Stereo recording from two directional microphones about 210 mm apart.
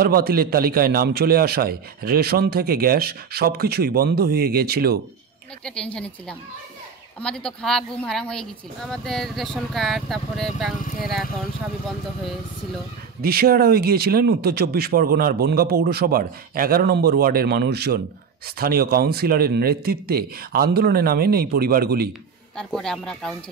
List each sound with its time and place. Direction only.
0.0 s a man's voice: 45° right (ahead or behind)
5.6 s speech: 5° left (ahead or behind)
13.2 s a man's voice: 45° right (ahead or behind)
22.6 s speech: 5° left (ahead or behind)